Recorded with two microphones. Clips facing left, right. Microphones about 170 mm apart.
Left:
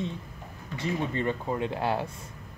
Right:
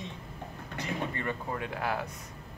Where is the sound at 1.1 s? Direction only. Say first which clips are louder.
Left 6 dB; 20° left (ahead or behind).